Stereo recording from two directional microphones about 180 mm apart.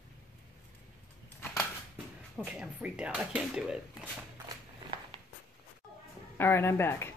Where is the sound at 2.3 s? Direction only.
5° right (ahead or behind).